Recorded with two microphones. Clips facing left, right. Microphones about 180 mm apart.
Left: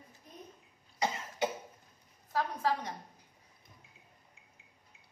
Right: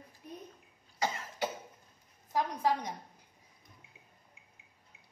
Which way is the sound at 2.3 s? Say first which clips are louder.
Right 1 dB; 15° right (ahead or behind).